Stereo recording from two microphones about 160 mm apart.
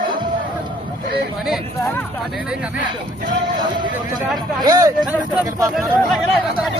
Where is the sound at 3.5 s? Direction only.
30° right (ahead or behind).